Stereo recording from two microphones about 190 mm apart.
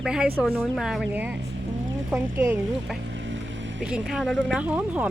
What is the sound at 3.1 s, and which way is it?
Boat, 75° right (ahead or behind).